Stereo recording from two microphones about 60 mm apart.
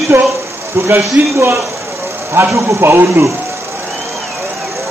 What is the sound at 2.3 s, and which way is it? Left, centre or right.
Speech, right.